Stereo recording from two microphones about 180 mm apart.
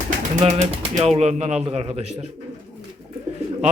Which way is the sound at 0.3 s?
40° right (ahead or behind).